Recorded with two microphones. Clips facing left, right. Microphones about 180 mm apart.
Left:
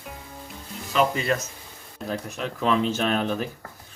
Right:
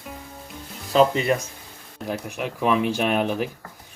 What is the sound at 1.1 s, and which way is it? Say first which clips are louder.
Speech: right 3 dB; 20° right (ahead or behind).